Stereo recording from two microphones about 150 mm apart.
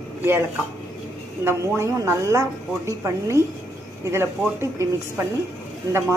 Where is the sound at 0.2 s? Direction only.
15° right (ahead or behind).